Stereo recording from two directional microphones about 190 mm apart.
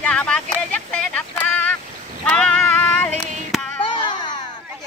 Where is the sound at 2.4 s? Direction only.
5° left (ahead or behind).